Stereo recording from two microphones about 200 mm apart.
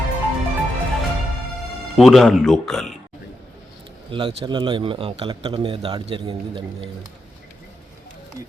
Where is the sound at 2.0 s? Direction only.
Centre (ahead or behind).